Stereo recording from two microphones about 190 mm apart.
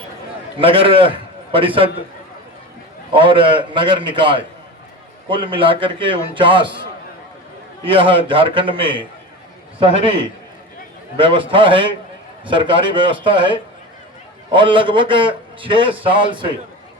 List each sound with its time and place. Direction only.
0.6 s a man's voice: 30° right (ahead or behind)
3.1 s a man's voice: 25° right (ahead or behind)
7.9 s a man's voice: 25° right (ahead or behind)
11.2 s a man's voice: 25° right (ahead or behind)